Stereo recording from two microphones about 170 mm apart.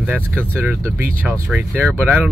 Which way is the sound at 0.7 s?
10° right (ahead or behind).